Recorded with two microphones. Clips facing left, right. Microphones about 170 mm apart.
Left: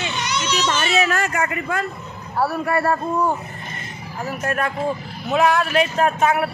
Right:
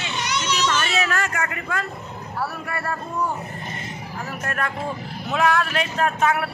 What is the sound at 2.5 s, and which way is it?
Speech, 30° left (ahead or behind).